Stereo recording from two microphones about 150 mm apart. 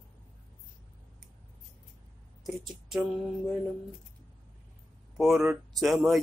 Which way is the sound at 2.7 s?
Centre (ahead or behind).